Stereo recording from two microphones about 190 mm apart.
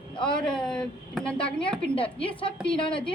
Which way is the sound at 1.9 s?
30° left (ahead or behind).